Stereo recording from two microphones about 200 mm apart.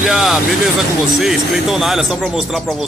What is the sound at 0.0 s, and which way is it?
Speech, centre (ahead or behind).